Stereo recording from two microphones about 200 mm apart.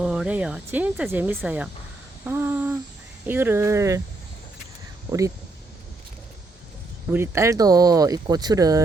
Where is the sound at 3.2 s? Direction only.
10° right (ahead or behind).